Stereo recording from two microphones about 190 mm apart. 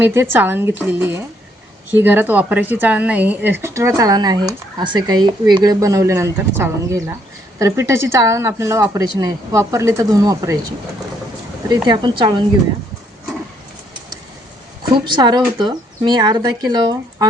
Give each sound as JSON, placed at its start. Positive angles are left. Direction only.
{"t": 0.0, "sound": "a woman's voice", "side_deg": -10}
{"t": 11.7, "sound": "speech", "side_deg": -25}
{"t": 14.9, "sound": "speech", "side_deg": -25}